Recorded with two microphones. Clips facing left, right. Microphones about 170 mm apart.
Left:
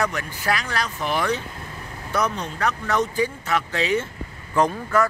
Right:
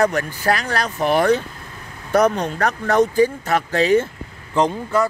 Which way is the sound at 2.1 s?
60° right (ahead or behind).